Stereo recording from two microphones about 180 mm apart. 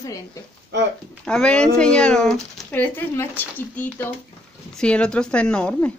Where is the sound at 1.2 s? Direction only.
5° left (ahead or behind).